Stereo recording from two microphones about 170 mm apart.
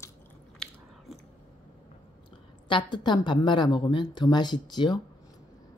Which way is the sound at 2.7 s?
30° left (ahead or behind).